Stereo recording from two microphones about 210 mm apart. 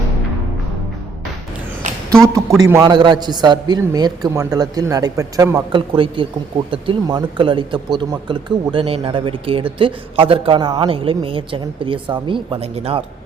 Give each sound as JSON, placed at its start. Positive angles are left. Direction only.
{"t": 2.6, "sound": "a man's voice", "side_deg": -15}